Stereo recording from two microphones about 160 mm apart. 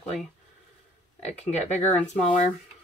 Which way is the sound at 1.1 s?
40° left (ahead or behind).